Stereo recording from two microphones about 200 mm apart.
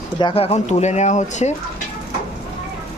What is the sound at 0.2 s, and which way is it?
Speech, 25° left (ahead or behind).